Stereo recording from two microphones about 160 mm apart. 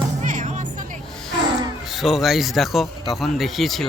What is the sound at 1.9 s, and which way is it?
Speech, centre (ahead or behind).